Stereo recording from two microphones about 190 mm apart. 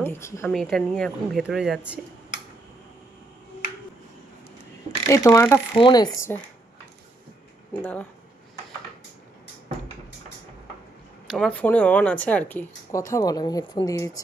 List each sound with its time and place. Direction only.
0.0 s speech: 15° left (ahead or behind)
0.5 s speech: centre (ahead or behind)
5.0 s speech: 15° left (ahead or behind)
7.8 s speech: 10° left (ahead or behind)
11.2 s speech: 5° left (ahead or behind)
13.1 s speech: 20° left (ahead or behind)